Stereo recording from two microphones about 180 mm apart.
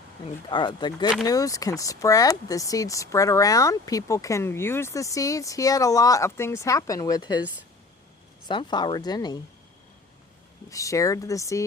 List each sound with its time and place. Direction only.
0.5 s speech: 25° left (ahead or behind)
8.4 s speech: 25° left (ahead or behind)
10.7 s speech: 15° left (ahead or behind)